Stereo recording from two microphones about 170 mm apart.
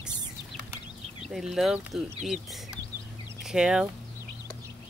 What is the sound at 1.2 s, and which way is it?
Speech, centre (ahead or behind).